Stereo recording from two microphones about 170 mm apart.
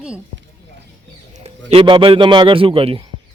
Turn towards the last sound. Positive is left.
turn(degrees=-30)  # may be behind; listen again after turning